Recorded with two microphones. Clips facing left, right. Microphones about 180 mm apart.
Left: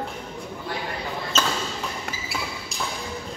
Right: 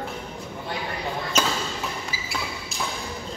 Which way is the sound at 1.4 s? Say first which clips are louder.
Right 1 dB; 10° right (ahead or behind).